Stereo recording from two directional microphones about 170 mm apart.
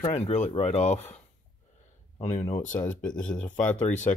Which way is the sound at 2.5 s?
40° left (ahead or behind).